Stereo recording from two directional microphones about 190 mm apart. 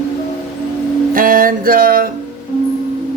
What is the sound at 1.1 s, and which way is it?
Speech, 50° right (ahead or behind).